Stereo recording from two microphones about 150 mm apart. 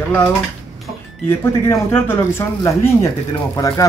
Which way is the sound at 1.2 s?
15° left (ahead or behind).